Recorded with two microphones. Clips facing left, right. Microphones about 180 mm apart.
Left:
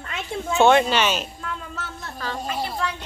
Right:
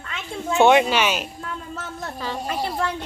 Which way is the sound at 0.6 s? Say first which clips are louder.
Right 1 dB; 10° right (ahead or behind).